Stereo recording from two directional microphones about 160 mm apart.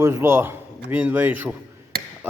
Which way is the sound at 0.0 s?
15° right (ahead or behind).